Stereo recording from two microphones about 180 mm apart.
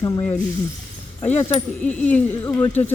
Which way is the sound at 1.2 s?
40° left (ahead or behind).